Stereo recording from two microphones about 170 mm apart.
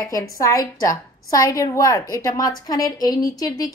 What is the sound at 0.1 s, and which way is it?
A woman's voice, 20° left (ahead or behind).